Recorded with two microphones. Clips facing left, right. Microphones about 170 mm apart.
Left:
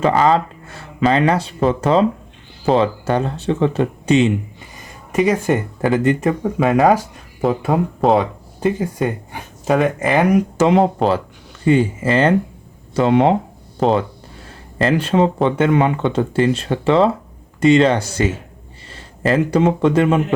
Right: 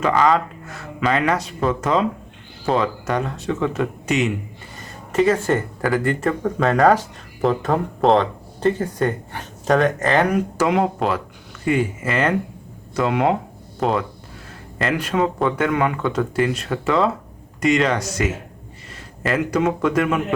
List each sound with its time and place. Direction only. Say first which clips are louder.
0.0 s speech: left 3 dB; 30° left (ahead or behind)
4.8 s speech: left 1 dB; 15° left (ahead or behind)
10.6 s speech: left 4 dB; 30° left (ahead or behind)
14.8 s speech: left 5 dB; 30° left (ahead or behind)